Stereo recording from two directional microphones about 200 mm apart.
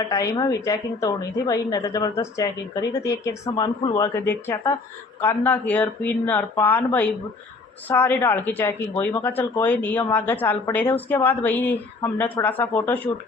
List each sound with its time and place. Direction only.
0.1 s speech: 15° left (ahead or behind)